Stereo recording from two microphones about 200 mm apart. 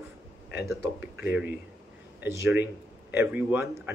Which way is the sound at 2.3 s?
15° right (ahead or behind).